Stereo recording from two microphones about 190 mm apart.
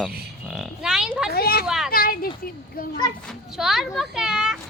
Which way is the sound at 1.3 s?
55° left (ahead or behind).